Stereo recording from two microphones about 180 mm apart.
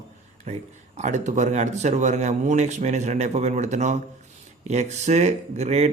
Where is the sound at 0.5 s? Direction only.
40° right (ahead or behind).